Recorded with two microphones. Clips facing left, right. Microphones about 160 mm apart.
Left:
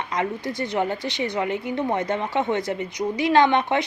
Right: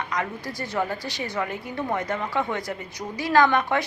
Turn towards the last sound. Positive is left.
turn(degrees=20)  # may be behind; listen again after turning